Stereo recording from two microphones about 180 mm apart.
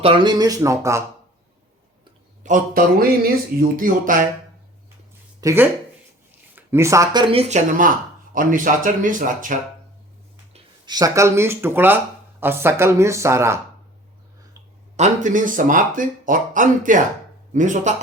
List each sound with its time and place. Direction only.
0.0 s speech: 30° right (ahead or behind)
2.4 s speech: 50° right (ahead or behind)
5.4 s speech: 15° right (ahead or behind); by 7.9 s 40° right (ahead or behind)
8.4 s speech: 50° right (ahead or behind)
10.5 s speech: 25° right (ahead or behind)
14.9 s speech: 40° right (ahead or behind)